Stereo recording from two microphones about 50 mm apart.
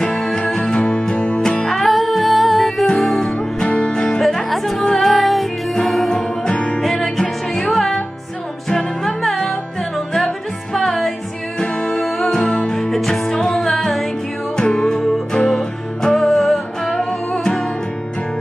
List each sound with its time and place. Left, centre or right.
0.0 s music: centre
3.3 s music: left
4.5 s music: centre
6.8 s music: centre
11.6 s music: centre
12.7 s music: centre